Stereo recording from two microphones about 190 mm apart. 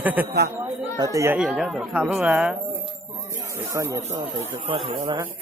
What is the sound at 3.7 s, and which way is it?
Speech, 15° right (ahead or behind).